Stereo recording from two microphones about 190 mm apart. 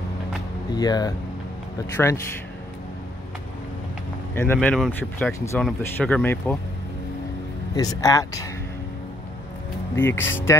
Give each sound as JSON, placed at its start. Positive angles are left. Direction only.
{"t": 0.7, "sound": "speech", "side_deg": 20}
{"t": 4.4, "sound": "speech", "side_deg": 10}
{"t": 7.7, "sound": "speech", "side_deg": 20}
{"t": 9.9, "sound": "speech", "side_deg": 10}